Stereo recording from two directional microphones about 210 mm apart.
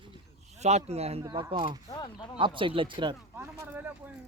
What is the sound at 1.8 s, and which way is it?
Mechanisms, 20° left (ahead or behind).